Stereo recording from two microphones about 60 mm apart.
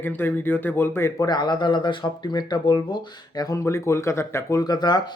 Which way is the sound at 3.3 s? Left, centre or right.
Left.